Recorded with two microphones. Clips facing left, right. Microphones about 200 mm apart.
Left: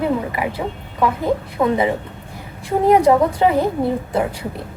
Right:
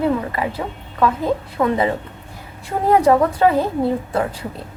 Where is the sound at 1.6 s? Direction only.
15° left (ahead or behind).